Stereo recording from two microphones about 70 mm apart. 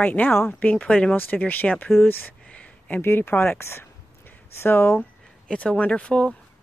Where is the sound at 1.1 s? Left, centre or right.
Left.